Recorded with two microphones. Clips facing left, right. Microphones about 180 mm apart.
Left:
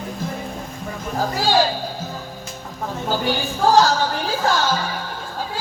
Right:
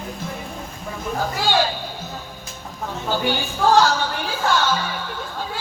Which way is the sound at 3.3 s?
40° left (ahead or behind).